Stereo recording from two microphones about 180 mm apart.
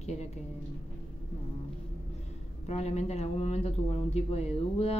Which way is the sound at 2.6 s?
40° left (ahead or behind).